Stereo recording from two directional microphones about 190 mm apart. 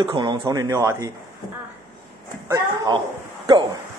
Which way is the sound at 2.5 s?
20° right (ahead or behind).